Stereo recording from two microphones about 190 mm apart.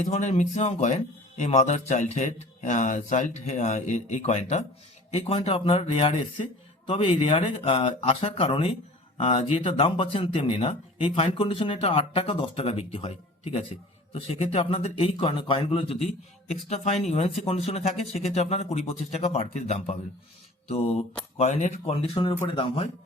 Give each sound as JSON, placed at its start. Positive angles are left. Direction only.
{"t": 0.0, "sound": "speech", "side_deg": 40}